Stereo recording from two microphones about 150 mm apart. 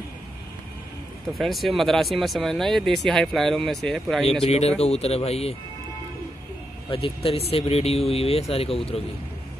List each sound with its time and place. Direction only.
1.3 s speech: centre (ahead or behind)
4.5 s speech: 45° left (ahead or behind)
6.9 s speech: 40° left (ahead or behind)